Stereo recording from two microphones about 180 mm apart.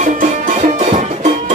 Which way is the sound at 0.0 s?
45° right (ahead or behind).